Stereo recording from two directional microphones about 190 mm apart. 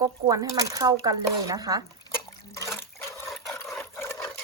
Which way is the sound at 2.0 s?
15° left (ahead or behind).